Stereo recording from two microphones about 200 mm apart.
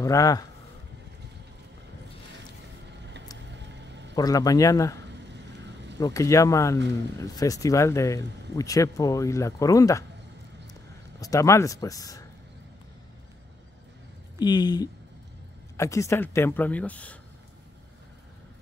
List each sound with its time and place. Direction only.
0.0 s speech: 15° left (ahead or behind)
4.1 s speech: 20° left (ahead or behind)
5.3 s vehicle: 60° right (ahead or behind)
5.9 s speech: 15° left (ahead or behind)
10.7 s a sound: 15° left (ahead or behind)
14.4 s speech: 20° left (ahead or behind)